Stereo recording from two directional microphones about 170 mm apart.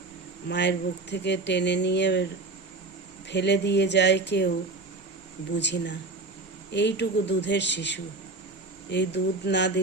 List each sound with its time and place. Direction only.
0.4 s speech: 85° left
3.2 s speech: 90° left
5.5 s speech: 90° left